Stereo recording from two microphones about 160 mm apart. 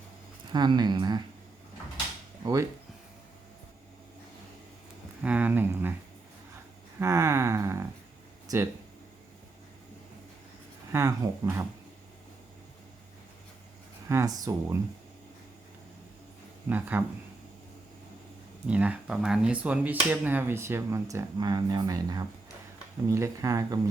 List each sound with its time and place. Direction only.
0.5 s speech: 25° right (ahead or behind)
2.4 s speech: 20° right (ahead or behind)
5.2 s speech: 10° right (ahead or behind)
7.0 s speech: 20° right (ahead or behind)
10.9 s speech: 20° right (ahead or behind)
14.1 s speech: 20° right (ahead or behind)
16.6 s speech: 10° right (ahead or behind)
18.7 s speech: 10° right (ahead or behind)